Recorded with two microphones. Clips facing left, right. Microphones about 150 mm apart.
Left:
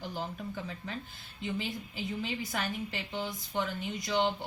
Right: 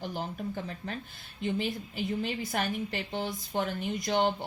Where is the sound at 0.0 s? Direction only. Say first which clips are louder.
Right 3 dB; 55° right (ahead or behind).